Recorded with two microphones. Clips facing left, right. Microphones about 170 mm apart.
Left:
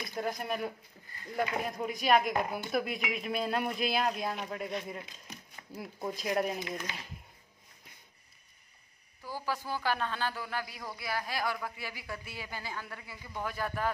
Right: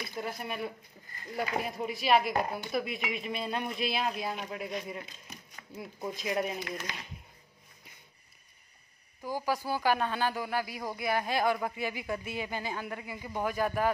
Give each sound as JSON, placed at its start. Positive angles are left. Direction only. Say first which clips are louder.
{"t": 0.1, "sound": "speech", "louder": "left 6 dB", "side_deg": -5}
{"t": 9.2, "sound": "a man's voice", "louder": "right 4 dB", "side_deg": -15}